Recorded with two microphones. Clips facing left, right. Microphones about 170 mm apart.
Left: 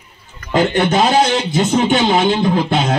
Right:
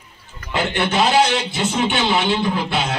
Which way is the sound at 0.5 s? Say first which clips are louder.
Left 7 dB; 40° left (ahead or behind).